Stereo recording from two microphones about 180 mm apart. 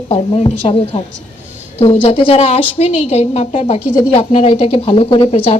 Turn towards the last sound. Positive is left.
turn(degrees=35)  # may be behind; listen again after turning